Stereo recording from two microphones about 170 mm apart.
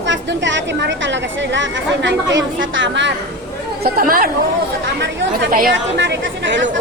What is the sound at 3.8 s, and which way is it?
Speech, 60° right (ahead or behind).